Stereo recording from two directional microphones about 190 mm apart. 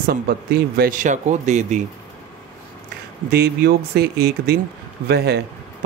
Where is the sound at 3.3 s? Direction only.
55° right (ahead or behind).